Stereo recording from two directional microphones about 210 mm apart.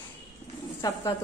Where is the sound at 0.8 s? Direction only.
15° left (ahead or behind).